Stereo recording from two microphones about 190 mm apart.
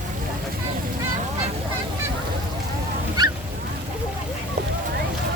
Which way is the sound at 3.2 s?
20° right (ahead or behind).